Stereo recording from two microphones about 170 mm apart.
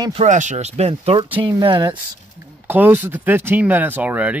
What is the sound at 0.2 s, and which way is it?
Speech, 45° right (ahead or behind).